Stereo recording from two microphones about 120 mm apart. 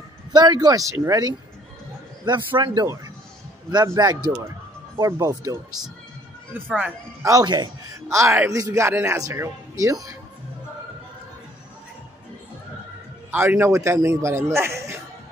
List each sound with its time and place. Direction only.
0.3 s speech: 35° right (ahead or behind)
2.2 s a man's voice: 40° right (ahead or behind)
6.5 s speech: 10° right (ahead or behind)
7.2 s a man's voice: 30° right (ahead or behind)
13.3 s a man's voice: 15° right (ahead or behind)